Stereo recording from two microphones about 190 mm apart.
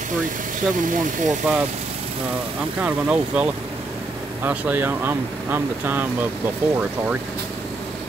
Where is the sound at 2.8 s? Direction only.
5° right (ahead or behind).